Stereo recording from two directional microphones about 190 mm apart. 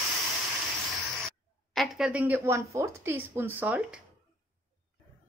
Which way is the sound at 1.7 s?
Centre (ahead or behind).